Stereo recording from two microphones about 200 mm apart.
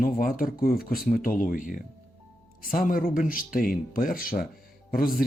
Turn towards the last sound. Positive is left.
turn(degrees=45)  # may be behind; listen again after turning